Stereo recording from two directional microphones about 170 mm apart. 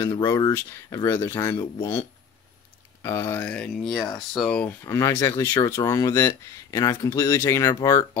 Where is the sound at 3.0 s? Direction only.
15° left (ahead or behind).